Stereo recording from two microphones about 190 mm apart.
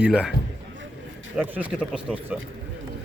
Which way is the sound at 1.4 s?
10° right (ahead or behind).